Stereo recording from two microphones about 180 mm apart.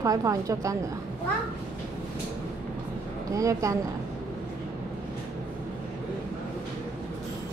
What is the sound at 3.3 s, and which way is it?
Speech, 20° right (ahead or behind).